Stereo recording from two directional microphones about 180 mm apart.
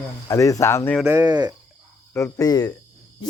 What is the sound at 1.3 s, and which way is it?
Speech, 25° right (ahead or behind).